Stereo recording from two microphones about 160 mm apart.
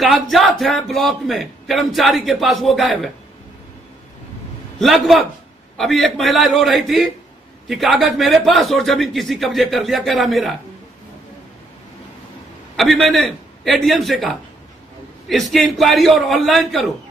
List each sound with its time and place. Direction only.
0.0 s a man's voice: centre (ahead or behind)
4.7 s a man's voice: centre (ahead or behind)
12.7 s a man's voice: centre (ahead or behind)